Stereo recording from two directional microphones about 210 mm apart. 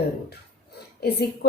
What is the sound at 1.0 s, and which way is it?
Speech, 50° left (ahead or behind).